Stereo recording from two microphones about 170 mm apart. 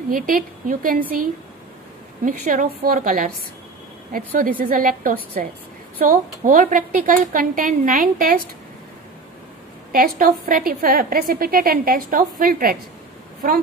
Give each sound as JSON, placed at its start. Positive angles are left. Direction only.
{"t": 0.1, "sound": "a woman's voice", "side_deg": -50}
{"t": 9.9, "sound": "a woman's voice", "side_deg": -55}